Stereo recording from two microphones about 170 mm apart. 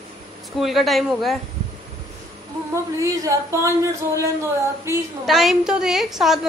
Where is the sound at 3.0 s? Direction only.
20° right (ahead or behind).